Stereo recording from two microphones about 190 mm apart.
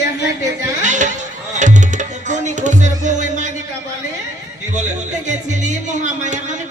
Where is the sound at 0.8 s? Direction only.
40° right (ahead or behind).